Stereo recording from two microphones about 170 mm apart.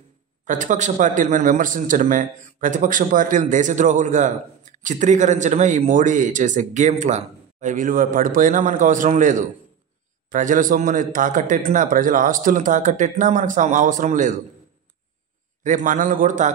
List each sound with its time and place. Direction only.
0.5 s speech: 45° right (ahead or behind)
15.6 s speech: 50° right (ahead or behind)